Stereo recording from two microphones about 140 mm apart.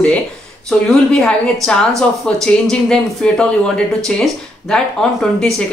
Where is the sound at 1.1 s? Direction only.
5° left (ahead or behind).